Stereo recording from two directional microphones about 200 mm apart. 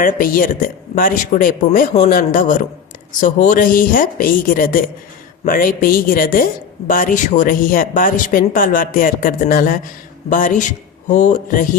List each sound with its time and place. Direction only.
0.0 s speech: 45° left (ahead or behind)
10.2 s music: 40° left (ahead or behind)